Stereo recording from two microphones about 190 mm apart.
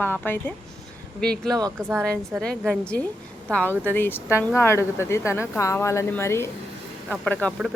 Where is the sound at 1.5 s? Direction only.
20° right (ahead or behind).